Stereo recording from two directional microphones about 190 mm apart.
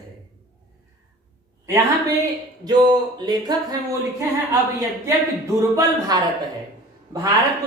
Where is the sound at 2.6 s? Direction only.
20° right (ahead or behind).